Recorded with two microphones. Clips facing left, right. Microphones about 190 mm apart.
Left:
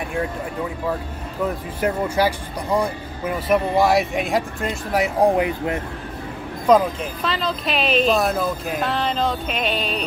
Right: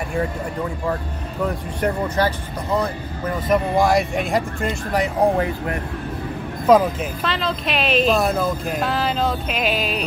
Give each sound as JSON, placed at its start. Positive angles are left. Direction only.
{"t": 1.8, "sound": "speech", "side_deg": 5}
{"t": 5.2, "sound": "speech", "side_deg": 15}
{"t": 6.7, "sound": "speech", "side_deg": -5}